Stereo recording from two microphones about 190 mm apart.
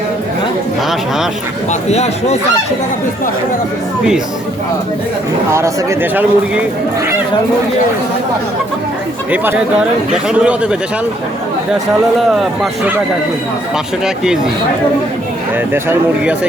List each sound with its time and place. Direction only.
1.9 s speech: 35° left (ahead or behind)
5.5 s speech: 15° right (ahead or behind)
9.3 s a man's voice: 10° right (ahead or behind)
15.7 s speech: 10° right (ahead or behind)